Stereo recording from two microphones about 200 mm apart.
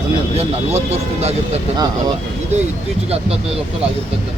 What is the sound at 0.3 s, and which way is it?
Speech, 30° right (ahead or behind).